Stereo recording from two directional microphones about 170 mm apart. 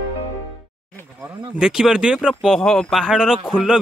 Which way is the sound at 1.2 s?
5° right (ahead or behind).